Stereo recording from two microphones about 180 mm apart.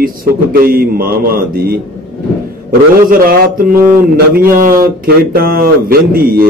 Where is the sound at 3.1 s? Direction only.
50° right (ahead or behind).